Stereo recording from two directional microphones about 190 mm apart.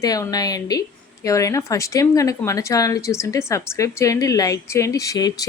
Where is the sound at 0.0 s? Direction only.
20° left (ahead or behind).